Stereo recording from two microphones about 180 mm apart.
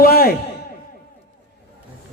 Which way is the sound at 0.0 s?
55° left (ahead or behind).